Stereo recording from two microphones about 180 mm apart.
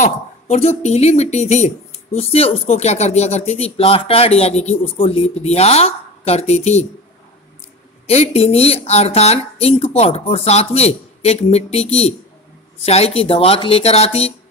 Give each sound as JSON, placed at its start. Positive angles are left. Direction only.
{"t": 0.0, "sound": "a woman's voice", "side_deg": 35}
{"t": 8.1, "sound": "a woman's voice", "side_deg": 35}